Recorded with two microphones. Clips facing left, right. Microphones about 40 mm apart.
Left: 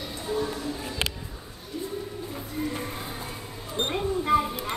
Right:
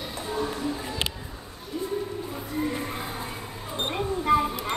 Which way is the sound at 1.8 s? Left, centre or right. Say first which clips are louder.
Right 4 dB; centre.